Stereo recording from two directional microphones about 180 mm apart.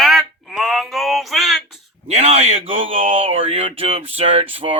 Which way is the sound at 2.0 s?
35° right (ahead or behind).